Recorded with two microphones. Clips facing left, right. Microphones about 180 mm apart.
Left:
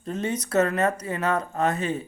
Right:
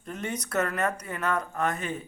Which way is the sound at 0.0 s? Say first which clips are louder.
Left 6 dB; 20° left (ahead or behind).